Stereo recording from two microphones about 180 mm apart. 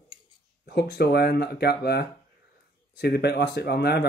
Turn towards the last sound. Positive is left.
turn(degrees=65)  # may be behind; listen again after turning